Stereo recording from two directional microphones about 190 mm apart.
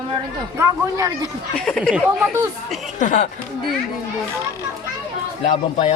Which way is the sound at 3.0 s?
40° left (ahead or behind).